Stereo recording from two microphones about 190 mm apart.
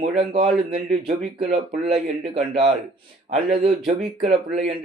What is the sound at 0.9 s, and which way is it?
Speech, 35° right (ahead or behind).